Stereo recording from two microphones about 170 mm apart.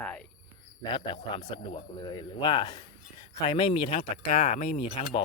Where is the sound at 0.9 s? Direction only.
30° left (ahead or behind).